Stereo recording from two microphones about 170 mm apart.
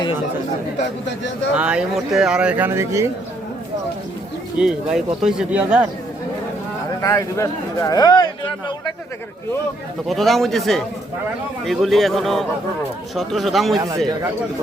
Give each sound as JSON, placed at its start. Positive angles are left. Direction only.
{"t": 1.5, "sound": "speech", "side_deg": -5}
{"t": 4.5, "sound": "speech", "side_deg": -5}
{"t": 7.0, "sound": "speech", "side_deg": 20}
{"t": 10.1, "sound": "speech", "side_deg": 0}
{"t": 13.7, "sound": "speech", "side_deg": -20}